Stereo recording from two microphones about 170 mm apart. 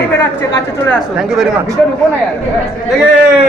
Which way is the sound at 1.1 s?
5° right (ahead or behind).